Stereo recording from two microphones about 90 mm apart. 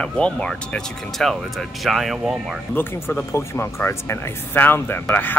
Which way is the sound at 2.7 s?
20° left (ahead or behind).